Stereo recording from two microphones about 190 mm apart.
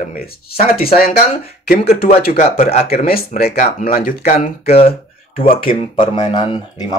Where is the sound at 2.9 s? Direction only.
50° left (ahead or behind).